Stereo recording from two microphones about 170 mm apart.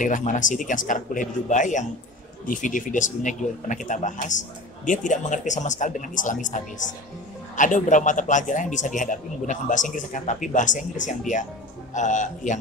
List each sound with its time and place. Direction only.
0.0 s speech: 50° left (ahead or behind)